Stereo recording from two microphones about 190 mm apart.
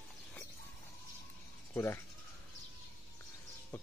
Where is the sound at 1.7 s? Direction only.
10° left (ahead or behind).